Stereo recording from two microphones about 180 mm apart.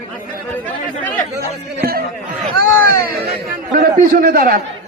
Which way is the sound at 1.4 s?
55° right (ahead or behind).